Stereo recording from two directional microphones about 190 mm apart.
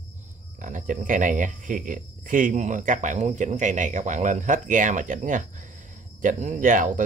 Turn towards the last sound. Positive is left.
turn(degrees=-45)  # may be behind; listen again after turning